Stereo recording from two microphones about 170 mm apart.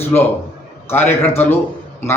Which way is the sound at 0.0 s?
10° left (ahead or behind).